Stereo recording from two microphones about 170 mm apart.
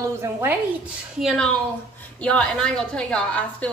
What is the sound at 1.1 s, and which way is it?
A woman's voice, centre (ahead or behind).